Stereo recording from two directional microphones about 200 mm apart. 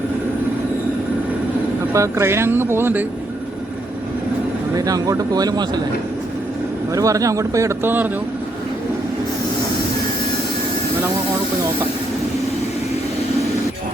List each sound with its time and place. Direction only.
1.9 s speech: 15° right (ahead or behind)
4.9 s speech: 15° right (ahead or behind)
6.9 s speech: 15° right (ahead or behind)